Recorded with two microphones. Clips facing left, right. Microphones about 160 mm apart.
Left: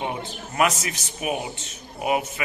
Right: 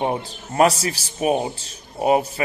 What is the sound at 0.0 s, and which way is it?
A man's voice, 35° right (ahead or behind).